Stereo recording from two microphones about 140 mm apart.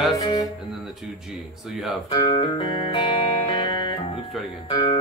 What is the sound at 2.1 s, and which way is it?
Music, 35° left (ahead or behind).